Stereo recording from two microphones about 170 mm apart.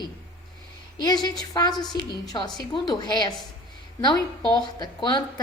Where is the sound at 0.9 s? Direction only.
25° left (ahead or behind).